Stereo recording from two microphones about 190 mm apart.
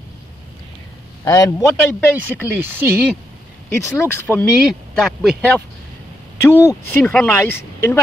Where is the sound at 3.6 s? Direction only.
10° left (ahead or behind).